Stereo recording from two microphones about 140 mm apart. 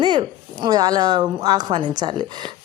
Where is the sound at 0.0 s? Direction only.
35° right (ahead or behind).